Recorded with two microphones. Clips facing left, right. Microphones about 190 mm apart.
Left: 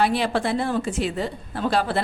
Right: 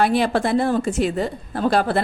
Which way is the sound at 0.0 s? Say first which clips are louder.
Right 3 dB; 50° right (ahead or behind).